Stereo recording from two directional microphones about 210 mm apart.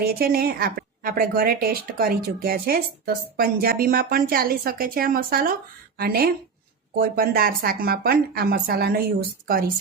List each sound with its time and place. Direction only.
0.0 s speech: 45° right (ahead or behind)